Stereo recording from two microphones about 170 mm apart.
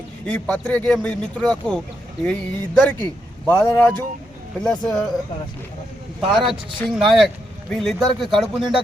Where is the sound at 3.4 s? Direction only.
15° left (ahead or behind).